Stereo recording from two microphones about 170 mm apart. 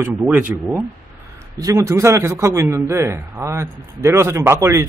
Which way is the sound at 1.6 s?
20° right (ahead or behind).